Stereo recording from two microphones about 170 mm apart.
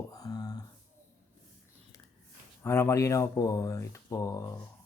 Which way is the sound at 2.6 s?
15° left (ahead or behind).